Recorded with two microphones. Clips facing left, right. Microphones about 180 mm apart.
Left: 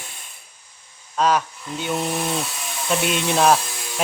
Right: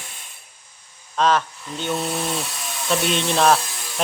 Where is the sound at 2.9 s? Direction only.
10° left (ahead or behind).